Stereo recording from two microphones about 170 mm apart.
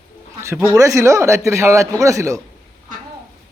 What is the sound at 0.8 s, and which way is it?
A man's voice, 20° right (ahead or behind).